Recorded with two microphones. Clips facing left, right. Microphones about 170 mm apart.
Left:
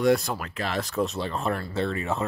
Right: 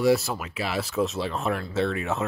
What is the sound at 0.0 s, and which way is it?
Speech, centre (ahead or behind).